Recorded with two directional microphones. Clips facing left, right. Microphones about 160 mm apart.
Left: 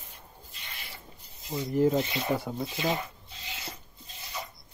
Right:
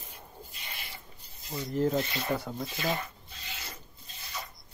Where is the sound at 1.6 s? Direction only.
10° left (ahead or behind).